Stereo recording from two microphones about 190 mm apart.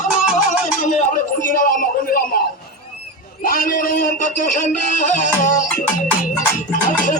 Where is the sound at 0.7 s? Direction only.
40° left (ahead or behind).